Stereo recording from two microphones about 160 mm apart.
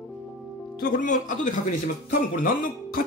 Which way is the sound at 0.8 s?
55° left (ahead or behind).